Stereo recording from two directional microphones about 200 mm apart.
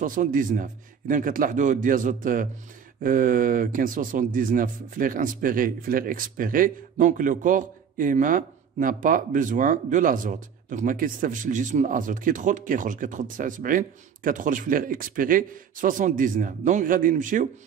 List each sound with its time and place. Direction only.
0.0 s a man's voice: 40° right (ahead or behind)